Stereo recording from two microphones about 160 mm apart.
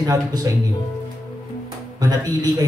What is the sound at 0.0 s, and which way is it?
Speech, 25° right (ahead or behind).